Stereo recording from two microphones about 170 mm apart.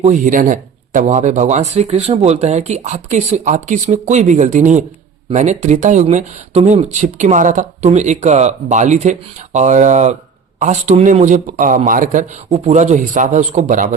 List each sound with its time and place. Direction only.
0.0 s speech: 45° right (ahead or behind)
12.5 s speech: 40° right (ahead or behind)